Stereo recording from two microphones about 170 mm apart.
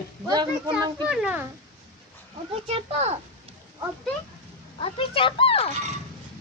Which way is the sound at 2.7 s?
35° right (ahead or behind).